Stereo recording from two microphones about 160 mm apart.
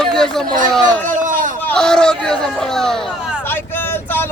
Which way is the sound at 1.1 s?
55° right (ahead or behind).